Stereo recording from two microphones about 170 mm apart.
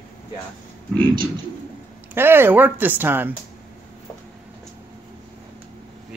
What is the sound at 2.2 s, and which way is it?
Speech, 15° right (ahead or behind).